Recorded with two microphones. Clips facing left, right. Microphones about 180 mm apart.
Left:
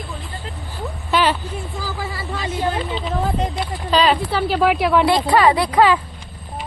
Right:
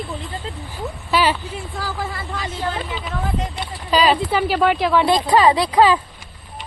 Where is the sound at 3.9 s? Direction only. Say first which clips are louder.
Even; 10° right (ahead or behind).